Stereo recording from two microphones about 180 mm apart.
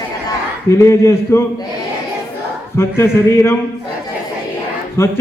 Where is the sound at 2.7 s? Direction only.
15° left (ahead or behind).